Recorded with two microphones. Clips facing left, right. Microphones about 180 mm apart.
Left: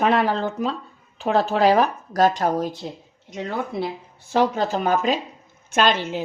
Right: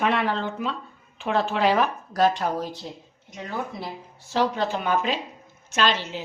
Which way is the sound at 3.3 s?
65° left (ahead or behind).